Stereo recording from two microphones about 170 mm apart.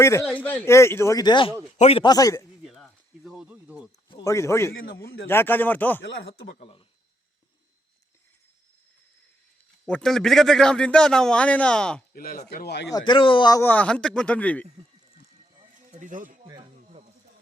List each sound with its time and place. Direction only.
0.0 s a man's voice: 15° left (ahead or behind); by 2.0 s 35° left (ahead or behind)
2.0 s speech: 20° left (ahead or behind)
2.6 s a sound: centre (ahead or behind)
4.2 s speech: 15° left (ahead or behind)
6.0 s speech: 80° left
6.6 s a man's voice: 30° left (ahead or behind)
9.8 s a man's voice: 5° left (ahead or behind)
12.1 s speech: 60° left (ahead or behind); by 12.9 s 80° left
12.9 s speech: 25° left (ahead or behind)
13.6 s speech: 10° left (ahead or behind)
15.8 s a sound: 45° right (ahead or behind)
16.4 s snake: 25° right (ahead or behind)